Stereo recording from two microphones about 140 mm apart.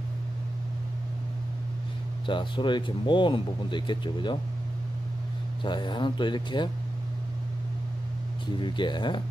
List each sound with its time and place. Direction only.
2.2 s speech: 35° left (ahead or behind)
5.6 s speech: 35° left (ahead or behind)
8.5 s speech: 35° left (ahead or behind)